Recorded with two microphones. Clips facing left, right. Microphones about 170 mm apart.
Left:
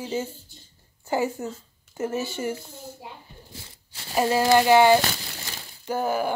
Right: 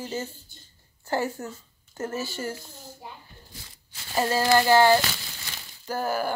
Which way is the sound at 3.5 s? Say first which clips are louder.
Left 4 dB; 25° left (ahead or behind).